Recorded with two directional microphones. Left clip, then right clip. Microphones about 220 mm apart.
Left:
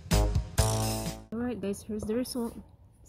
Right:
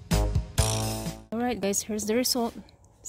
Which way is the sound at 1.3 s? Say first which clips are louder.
Right 8 dB; 35° right (ahead or behind).